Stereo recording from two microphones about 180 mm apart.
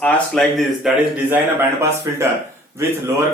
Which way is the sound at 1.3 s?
15° right (ahead or behind).